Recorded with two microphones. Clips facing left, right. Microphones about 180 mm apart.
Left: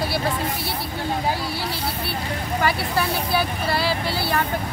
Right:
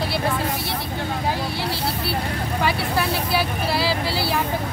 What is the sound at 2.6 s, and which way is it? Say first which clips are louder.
Speech: even; centre (ahead or behind).